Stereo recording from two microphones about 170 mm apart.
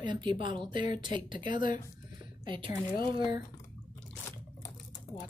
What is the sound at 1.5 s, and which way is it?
Speech, 50° left (ahead or behind).